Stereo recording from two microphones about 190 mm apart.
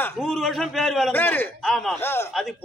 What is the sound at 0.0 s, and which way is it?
A man's voice, 5° left (ahead or behind).